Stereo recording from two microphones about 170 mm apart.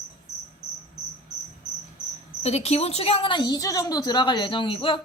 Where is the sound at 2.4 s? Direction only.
40° left (ahead or behind).